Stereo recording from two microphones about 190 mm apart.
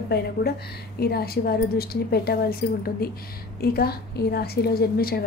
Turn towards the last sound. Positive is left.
turn(degrees=55)  # may be behind; listen again after turning